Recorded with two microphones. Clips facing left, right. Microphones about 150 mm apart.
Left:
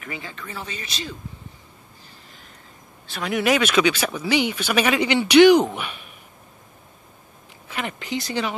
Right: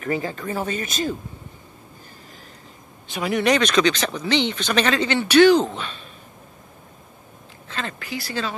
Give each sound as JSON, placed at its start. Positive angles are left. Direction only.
{"t": 0.0, "sound": "speech", "side_deg": -40}
{"t": 3.3, "sound": "speech", "side_deg": 5}
{"t": 7.6, "sound": "speech", "side_deg": 15}